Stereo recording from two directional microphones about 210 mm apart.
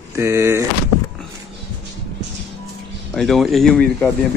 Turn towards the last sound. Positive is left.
turn(degrees=5)  # may be behind; listen again after turning